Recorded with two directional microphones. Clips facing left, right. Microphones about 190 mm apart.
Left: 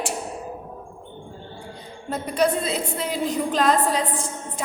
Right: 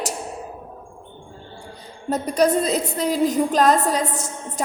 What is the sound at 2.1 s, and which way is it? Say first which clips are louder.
A woman's voice: right 3 dB; 40° right (ahead or behind).